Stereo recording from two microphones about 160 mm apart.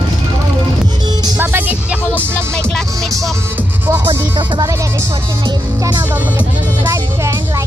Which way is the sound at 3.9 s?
30° right (ahead or behind).